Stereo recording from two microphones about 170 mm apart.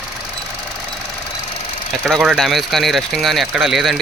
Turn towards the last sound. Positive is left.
turn(degrees=0)  # may be behind; listen again after turning